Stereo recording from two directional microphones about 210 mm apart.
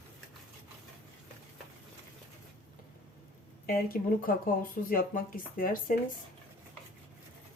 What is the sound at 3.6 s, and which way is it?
Speech, 45° left (ahead or behind).